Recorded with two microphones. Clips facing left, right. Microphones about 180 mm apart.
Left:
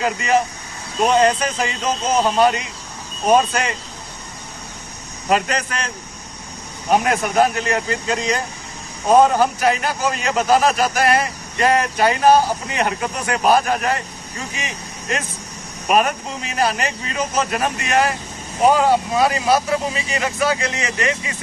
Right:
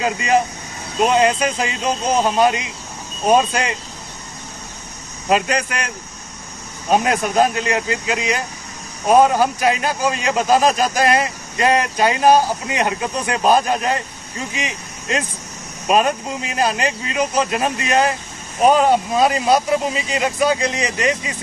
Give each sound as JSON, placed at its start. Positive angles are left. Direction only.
{"t": 0.0, "sound": "a man's voice", "side_deg": -20}
{"t": 5.3, "sound": "a man's voice", "side_deg": -15}
{"t": 6.9, "sound": "a man's voice", "side_deg": -20}
{"t": 16.5, "sound": "speech", "side_deg": -15}